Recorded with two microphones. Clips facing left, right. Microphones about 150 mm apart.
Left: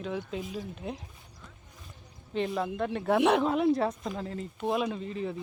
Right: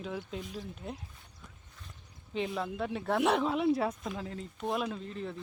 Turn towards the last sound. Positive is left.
turn(degrees=5)  # may be behind; listen again after turning